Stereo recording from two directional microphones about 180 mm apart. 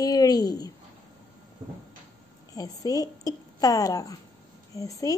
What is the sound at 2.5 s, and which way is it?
A woman's voice, 20° left (ahead or behind).